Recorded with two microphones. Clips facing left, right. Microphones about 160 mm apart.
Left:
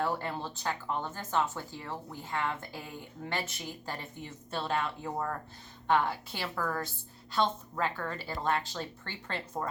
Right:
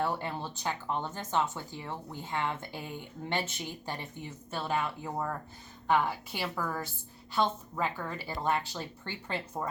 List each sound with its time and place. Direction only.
0.2 s speech: 15° right (ahead or behind)
4.5 s speech: 5° right (ahead or behind)